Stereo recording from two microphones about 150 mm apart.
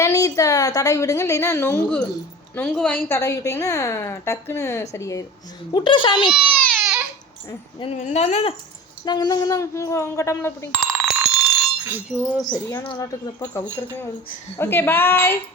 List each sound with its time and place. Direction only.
0.0 s a woman's voice: 20° left (ahead or behind)
5.7 s speech: 35° left (ahead or behind)
6.6 s baby cry: centre (ahead or behind)
8.0 s speech: 50° left (ahead or behind)
9.0 s a woman's voice: 25° left (ahead or behind)
10.8 s bicycle bell: centre (ahead or behind)
11.9 s speech: 10° right (ahead or behind)
12.5 s a woman's voice: 20° left (ahead or behind)